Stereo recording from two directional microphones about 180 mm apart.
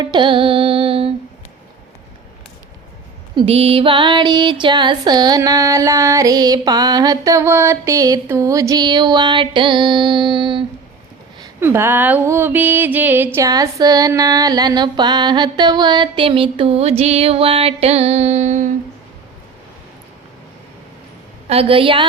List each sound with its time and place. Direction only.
0.0 s music: 25° right (ahead or behind)
3.3 s music: 35° right (ahead or behind)
11.6 s music: 15° right (ahead or behind); by 18.7 s 40° right (ahead or behind)
21.5 s a woman's voice: 30° right (ahead or behind)